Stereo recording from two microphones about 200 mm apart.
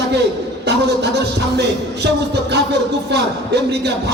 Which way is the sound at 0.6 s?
55° right (ahead or behind).